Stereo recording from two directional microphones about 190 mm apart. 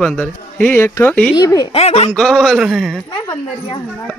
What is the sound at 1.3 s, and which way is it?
Speech, 20° left (ahead or behind).